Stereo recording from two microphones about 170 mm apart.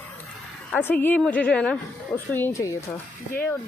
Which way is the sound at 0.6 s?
10° left (ahead or behind).